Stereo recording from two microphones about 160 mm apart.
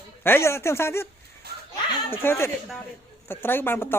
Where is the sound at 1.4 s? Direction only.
90° right.